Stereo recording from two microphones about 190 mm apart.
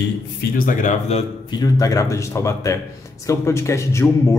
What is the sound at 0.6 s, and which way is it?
Speech, 45° left (ahead or behind).